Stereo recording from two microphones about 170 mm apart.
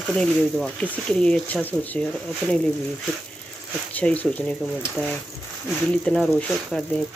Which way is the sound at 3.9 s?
10° left (ahead or behind).